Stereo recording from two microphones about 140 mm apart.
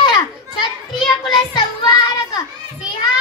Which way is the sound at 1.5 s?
30° left (ahead or behind).